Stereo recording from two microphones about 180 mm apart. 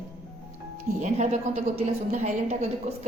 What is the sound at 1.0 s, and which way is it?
A woman's voice, 40° right (ahead or behind).